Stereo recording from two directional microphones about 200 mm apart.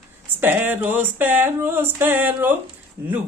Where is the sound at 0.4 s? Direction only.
10° right (ahead or behind).